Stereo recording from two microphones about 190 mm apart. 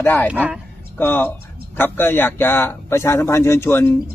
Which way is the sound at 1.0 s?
10° left (ahead or behind).